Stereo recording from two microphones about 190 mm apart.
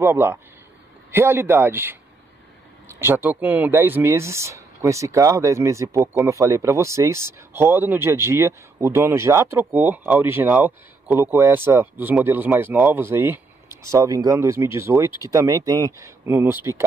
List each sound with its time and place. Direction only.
0.0 s speech: 10° right (ahead or behind)
3.0 s speech: 10° right (ahead or behind)